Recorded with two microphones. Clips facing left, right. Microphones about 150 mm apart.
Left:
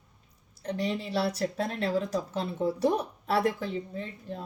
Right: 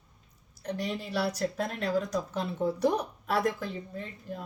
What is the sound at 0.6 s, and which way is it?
A woman's voice, 25° left (ahead or behind).